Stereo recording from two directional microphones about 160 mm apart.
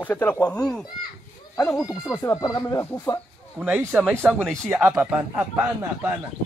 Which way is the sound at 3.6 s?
10° right (ahead or behind).